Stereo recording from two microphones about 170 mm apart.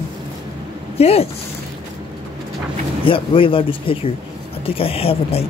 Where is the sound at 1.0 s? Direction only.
35° left (ahead or behind).